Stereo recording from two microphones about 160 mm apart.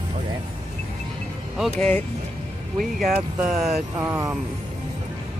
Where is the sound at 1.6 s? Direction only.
10° left (ahead or behind).